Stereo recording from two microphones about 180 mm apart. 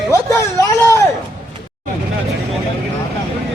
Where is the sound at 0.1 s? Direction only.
15° left (ahead or behind).